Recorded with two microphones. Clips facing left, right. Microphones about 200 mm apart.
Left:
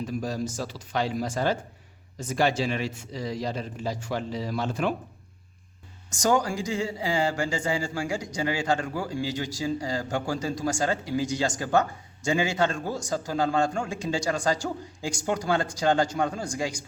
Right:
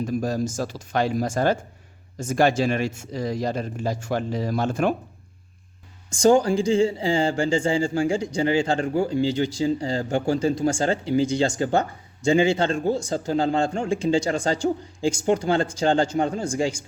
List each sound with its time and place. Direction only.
0.0 s speech: 45° right (ahead or behind)
6.2 s a man's voice: 25° right (ahead or behind)